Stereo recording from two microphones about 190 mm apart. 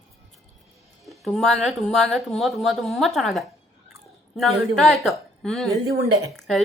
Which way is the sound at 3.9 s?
Centre (ahead or behind).